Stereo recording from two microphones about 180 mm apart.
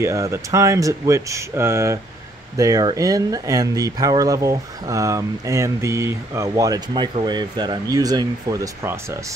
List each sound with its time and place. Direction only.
0.0 s speech: 15° right (ahead or behind)